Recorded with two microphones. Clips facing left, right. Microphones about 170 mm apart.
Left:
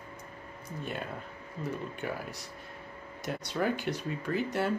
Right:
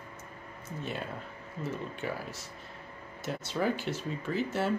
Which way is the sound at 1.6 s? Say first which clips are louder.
Even; centre (ahead or behind).